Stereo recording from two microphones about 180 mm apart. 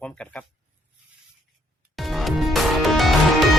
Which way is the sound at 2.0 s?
Centre (ahead or behind).